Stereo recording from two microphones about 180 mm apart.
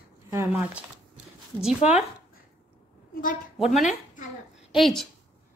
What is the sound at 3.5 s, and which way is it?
A woman's voice, centre (ahead or behind).